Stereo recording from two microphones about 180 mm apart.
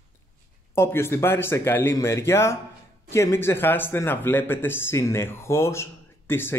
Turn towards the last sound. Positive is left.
turn(degrees=10)  # may be behind; listen again after turning